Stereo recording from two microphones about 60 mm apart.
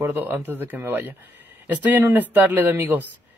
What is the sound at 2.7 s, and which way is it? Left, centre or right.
Speech, right.